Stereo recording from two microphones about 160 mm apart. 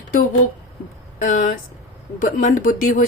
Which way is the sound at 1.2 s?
55° left (ahead or behind).